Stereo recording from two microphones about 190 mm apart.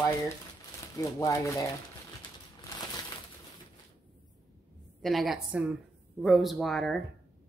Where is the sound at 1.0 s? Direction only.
15° left (ahead or behind).